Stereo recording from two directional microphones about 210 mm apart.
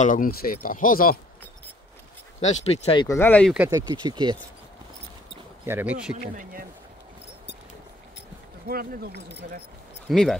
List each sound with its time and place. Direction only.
0.0 s speech: 40° left (ahead or behind)
2.4 s speech: 30° left (ahead or behind)
3.1 s speech: 10° left (ahead or behind)
3.5 s speech: 10° right (ahead or behind)
3.8 s speech: 20° right (ahead or behind)
5.7 s speech: 10° right (ahead or behind)
6.3 s speech: 45° right (ahead or behind)
8.6 s speech: 45° right (ahead or behind)
10.0 s speech: centre (ahead or behind)